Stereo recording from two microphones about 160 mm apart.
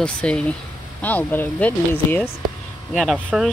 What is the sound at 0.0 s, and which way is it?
Speech, 5° left (ahead or behind).